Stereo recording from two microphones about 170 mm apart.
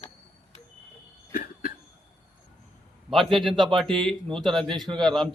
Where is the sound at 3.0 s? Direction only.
Centre (ahead or behind).